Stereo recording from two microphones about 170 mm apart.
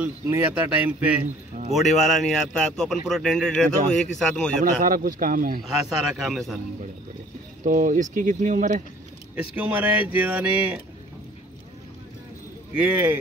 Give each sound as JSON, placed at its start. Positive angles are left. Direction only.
{"t": 0.0, "sound": "speech", "side_deg": -10}
{"t": 1.7, "sound": "a man's voice", "side_deg": 0}
{"t": 4.8, "sound": "speech", "side_deg": -60}
{"t": 5.6, "sound": "a man's voice", "side_deg": 0}
{"t": 7.6, "sound": "speech", "side_deg": -50}
{"t": 9.6, "sound": "speech", "side_deg": -10}
{"t": 12.7, "sound": "speech", "side_deg": -10}